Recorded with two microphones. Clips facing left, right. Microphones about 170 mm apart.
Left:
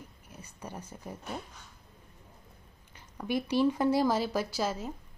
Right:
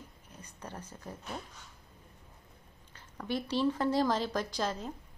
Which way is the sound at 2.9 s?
10° left (ahead or behind).